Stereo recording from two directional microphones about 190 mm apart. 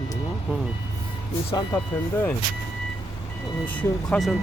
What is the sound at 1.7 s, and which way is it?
Speech, 20° left (ahead or behind).